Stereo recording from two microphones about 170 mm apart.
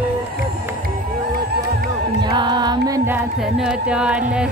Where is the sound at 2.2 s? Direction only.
25° right (ahead or behind).